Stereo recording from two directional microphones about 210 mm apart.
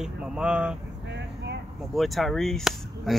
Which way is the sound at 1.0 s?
55° right (ahead or behind).